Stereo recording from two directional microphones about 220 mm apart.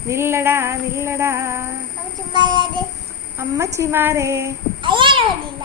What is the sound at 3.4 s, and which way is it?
A child's voice, 15° right (ahead or behind).